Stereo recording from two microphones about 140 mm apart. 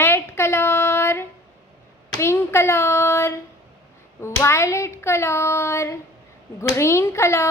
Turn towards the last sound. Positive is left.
turn(degrees=20)  # may be behind; listen again after turning